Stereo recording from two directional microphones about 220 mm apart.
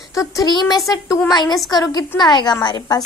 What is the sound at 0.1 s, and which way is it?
A woman's voice, 15° left (ahead or behind).